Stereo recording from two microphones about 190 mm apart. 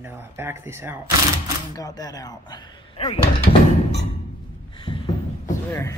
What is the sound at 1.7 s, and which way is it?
Speech, 20° left (ahead or behind).